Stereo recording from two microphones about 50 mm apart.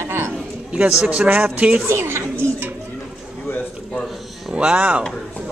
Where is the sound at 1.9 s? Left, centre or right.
Right.